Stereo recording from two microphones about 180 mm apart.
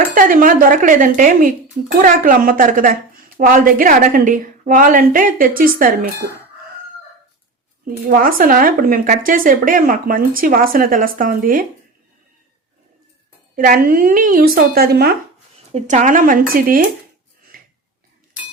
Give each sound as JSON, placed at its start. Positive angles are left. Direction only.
{"t": 0.1, "sound": "speech", "side_deg": -50}
{"t": 7.9, "sound": "speech", "side_deg": -50}
{"t": 13.6, "sound": "speech", "side_deg": -50}
{"t": 15.7, "sound": "speech", "side_deg": -40}